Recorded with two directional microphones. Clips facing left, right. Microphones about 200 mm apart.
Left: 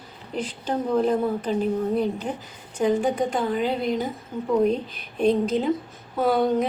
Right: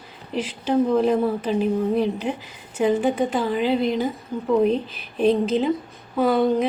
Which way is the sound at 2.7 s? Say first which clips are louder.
Right 2 dB; 5° right (ahead or behind).